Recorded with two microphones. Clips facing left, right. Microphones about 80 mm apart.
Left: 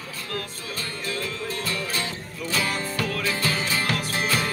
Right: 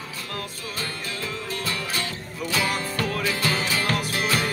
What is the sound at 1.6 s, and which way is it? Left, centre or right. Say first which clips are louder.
Music: right 1 dB; centre.